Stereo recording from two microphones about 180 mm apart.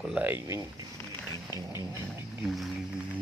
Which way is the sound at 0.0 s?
5° right (ahead or behind).